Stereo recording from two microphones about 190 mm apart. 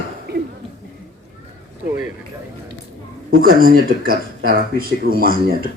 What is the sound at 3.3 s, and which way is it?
Speech, 50° right (ahead or behind).